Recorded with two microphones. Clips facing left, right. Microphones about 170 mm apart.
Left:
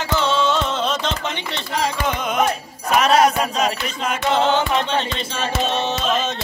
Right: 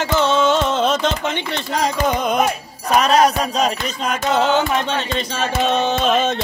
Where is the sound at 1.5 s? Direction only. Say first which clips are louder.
Even; 40° right (ahead or behind).